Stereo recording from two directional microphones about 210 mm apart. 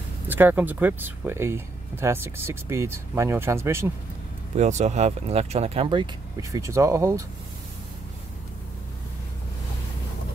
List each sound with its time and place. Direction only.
0.3 s speech: 10° right (ahead or behind)
4.6 s speech: 35° right (ahead or behind)
6.5 s speech: 15° right (ahead or behind)